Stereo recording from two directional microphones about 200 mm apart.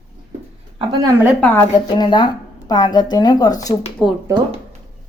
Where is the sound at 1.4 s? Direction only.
10° left (ahead or behind).